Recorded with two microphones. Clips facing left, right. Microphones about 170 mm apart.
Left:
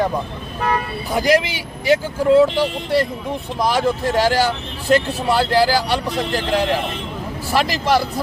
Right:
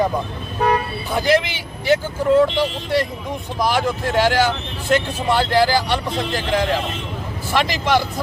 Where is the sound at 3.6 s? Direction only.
35° left (ahead or behind).